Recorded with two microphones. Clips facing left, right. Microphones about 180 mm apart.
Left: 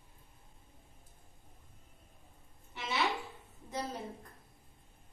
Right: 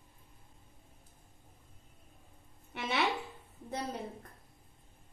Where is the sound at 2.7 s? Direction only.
60° right (ahead or behind).